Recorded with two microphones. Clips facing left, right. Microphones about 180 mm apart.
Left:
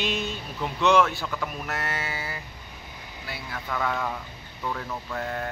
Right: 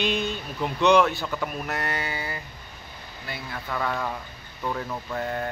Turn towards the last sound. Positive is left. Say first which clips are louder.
# right 2 dB
turn(degrees=-5)  # may be behind; listen again after turning